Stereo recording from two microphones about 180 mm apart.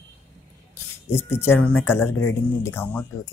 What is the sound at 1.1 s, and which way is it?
Speech, 15° left (ahead or behind).